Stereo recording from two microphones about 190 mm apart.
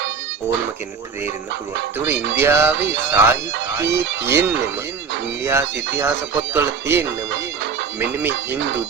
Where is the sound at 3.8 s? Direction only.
65° right (ahead or behind).